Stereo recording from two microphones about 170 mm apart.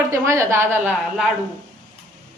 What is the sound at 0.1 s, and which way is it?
A woman's voice, 15° right (ahead or behind).